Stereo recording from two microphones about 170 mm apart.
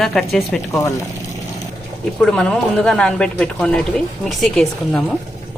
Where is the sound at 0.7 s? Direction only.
15° left (ahead or behind).